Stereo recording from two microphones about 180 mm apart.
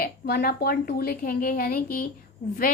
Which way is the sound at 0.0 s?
60° left (ahead or behind).